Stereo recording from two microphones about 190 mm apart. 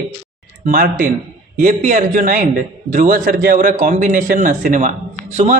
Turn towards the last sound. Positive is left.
turn(degrees=-35)  # may be behind; listen again after turning